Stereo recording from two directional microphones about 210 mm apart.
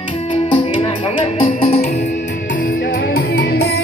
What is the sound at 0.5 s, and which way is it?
Music, 25° left (ahead or behind).